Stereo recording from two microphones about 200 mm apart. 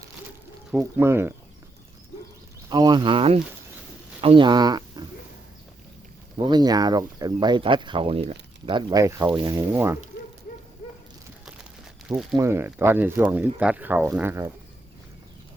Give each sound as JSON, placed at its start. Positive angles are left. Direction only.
{"t": 0.7, "sound": "speech", "side_deg": -5}
{"t": 2.6, "sound": "speech", "side_deg": -20}
{"t": 6.3, "sound": "speech", "side_deg": -20}
{"t": 12.0, "sound": "speech", "side_deg": 0}